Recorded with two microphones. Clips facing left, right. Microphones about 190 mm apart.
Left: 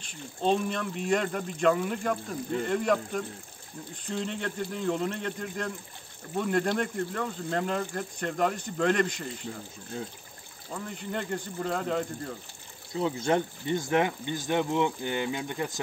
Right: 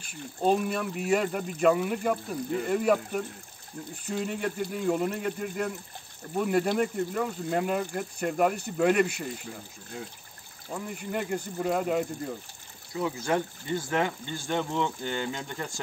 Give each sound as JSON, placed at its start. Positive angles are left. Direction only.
{"t": 0.0, "sound": "speech", "side_deg": -5}
{"t": 10.7, "sound": "speech", "side_deg": -10}
{"t": 12.9, "sound": "speech", "side_deg": 25}